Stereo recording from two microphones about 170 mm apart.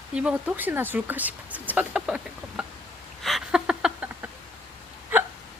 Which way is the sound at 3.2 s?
Centre (ahead or behind).